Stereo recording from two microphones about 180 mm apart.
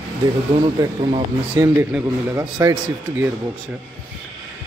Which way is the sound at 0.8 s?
30° right (ahead or behind).